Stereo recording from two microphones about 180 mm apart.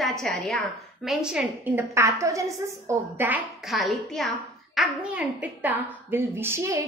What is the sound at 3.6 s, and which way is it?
A woman's voice, centre (ahead or behind).